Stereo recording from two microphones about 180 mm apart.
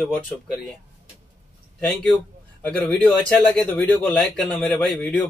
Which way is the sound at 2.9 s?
5° left (ahead or behind).